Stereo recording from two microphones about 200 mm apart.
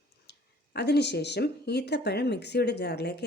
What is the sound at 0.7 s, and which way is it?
A woman's voice, 55° left (ahead or behind).